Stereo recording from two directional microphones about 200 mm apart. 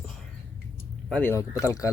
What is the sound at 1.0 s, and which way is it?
Speech, 5° left (ahead or behind).